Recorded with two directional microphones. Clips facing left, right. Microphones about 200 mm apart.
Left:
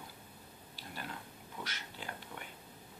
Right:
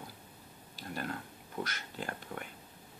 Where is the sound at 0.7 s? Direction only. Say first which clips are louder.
Right 7 dB; 50° right (ahead or behind).